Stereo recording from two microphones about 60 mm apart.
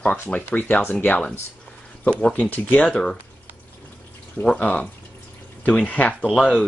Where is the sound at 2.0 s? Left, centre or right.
Left.